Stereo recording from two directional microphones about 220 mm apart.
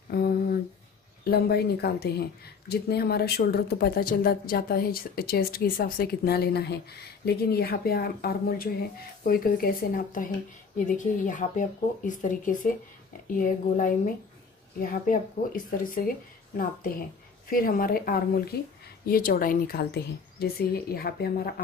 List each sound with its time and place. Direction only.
0.1 s a sound: 45° left (ahead or behind)
1.3 s speech: 45° left (ahead or behind)
17.5 s speech: 40° left (ahead or behind)